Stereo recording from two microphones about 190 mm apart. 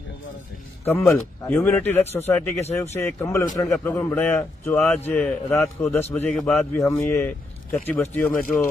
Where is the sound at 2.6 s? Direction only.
35° left (ahead or behind).